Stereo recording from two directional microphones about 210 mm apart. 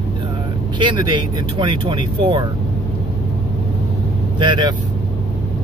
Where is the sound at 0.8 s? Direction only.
20° right (ahead or behind).